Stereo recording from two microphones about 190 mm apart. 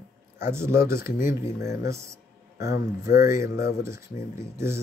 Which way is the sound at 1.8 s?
15° right (ahead or behind).